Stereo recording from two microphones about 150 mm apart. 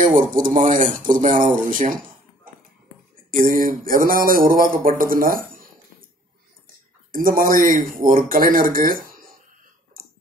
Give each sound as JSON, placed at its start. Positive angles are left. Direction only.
{"t": 0.0, "sound": "speech", "side_deg": -60}
{"t": 3.3, "sound": "speech", "side_deg": -70}
{"t": 7.1, "sound": "speech", "side_deg": -70}